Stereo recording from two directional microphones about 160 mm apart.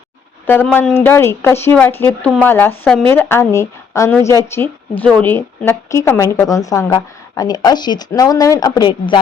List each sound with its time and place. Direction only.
0.4 s speech: 10° left (ahead or behind); by 9.2 s 30° left (ahead or behind)